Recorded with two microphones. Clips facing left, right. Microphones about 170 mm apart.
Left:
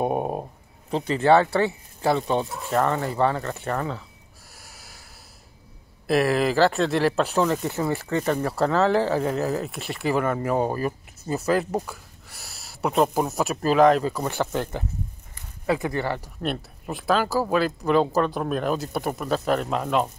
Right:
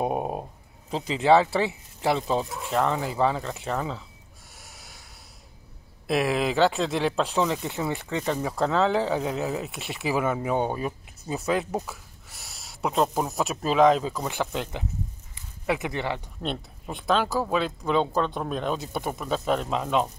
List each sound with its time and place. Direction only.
0.0 s speech: 5° left (ahead or behind)
4.6 s snort: centre (ahead or behind)
6.0 s speech: centre (ahead or behind)
15.6 s speech: 20° right (ahead or behind)
16.1 s speech: 5° left (ahead or behind)